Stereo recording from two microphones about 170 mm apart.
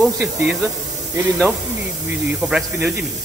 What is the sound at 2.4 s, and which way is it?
Speech, 5° right (ahead or behind).